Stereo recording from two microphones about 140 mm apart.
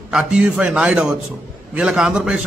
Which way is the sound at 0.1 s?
5° right (ahead or behind).